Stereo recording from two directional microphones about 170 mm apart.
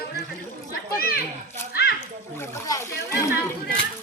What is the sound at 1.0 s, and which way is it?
Speech, 60° left (ahead or behind).